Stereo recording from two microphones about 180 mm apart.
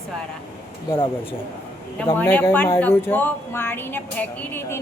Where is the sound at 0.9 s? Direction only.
30° left (ahead or behind).